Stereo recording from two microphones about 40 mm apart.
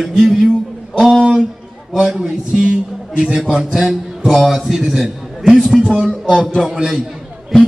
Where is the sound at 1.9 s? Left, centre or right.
Centre.